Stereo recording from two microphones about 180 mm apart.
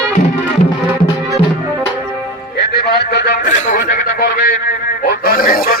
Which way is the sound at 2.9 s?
65° left (ahead or behind).